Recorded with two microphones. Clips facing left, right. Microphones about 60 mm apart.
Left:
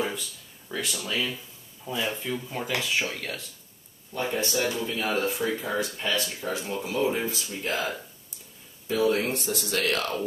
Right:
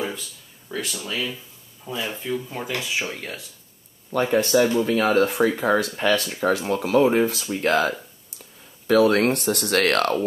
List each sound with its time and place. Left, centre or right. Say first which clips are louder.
0.7 s speech: right 2 dB; centre
4.1 s speech: right 9 dB; right